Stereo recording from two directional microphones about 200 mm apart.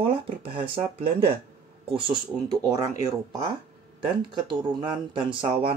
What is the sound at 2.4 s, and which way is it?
Speech, 15° right (ahead or behind).